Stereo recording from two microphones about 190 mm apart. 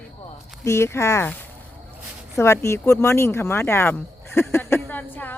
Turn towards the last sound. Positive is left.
turn(degrees=10)  # may be behind; listen again after turning